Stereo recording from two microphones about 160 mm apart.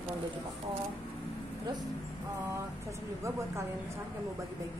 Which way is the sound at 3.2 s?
20° right (ahead or behind).